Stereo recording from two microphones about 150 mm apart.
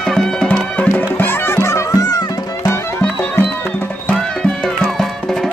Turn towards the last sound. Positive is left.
turn(degrees=5)  # may be behind; listen again after turning